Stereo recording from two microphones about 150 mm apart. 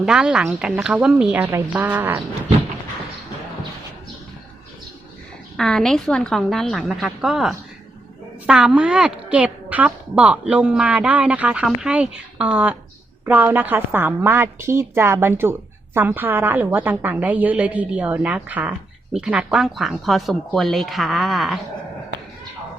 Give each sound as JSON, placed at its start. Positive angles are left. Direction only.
{"t": 0.0, "sound": "a woman's voice", "side_deg": -5}
{"t": 5.5, "sound": "a woman's voice", "side_deg": 5}